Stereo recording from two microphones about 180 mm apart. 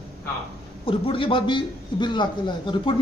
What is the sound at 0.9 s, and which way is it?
A man's voice, 30° left (ahead or behind).